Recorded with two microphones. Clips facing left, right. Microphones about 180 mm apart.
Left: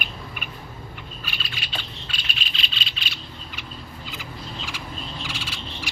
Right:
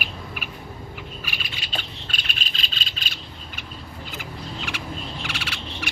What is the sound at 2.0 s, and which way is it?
Cricket, 45° right (ahead or behind).